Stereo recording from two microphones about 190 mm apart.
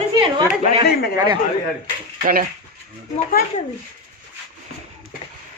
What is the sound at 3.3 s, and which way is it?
Speech, 50° left (ahead or behind).